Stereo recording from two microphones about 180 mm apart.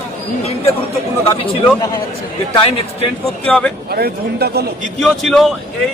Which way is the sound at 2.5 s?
30° left (ahead or behind).